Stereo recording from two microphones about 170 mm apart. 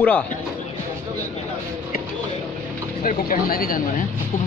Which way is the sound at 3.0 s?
55° left (ahead or behind).